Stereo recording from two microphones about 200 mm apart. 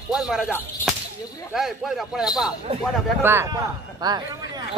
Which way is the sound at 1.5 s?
Centre (ahead or behind).